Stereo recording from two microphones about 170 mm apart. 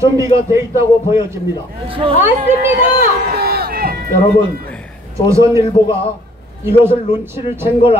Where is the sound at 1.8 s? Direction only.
30° right (ahead or behind).